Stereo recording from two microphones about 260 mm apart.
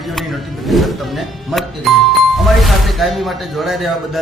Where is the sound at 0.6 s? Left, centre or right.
Centre.